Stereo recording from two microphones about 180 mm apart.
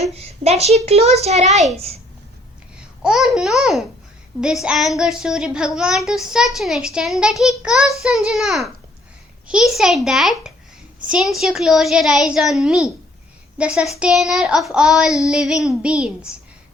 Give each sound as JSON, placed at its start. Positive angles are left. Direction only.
{"t": 0.0, "sound": "a child's voice", "side_deg": -35}
{"t": 3.0, "sound": "child singing", "side_deg": -5}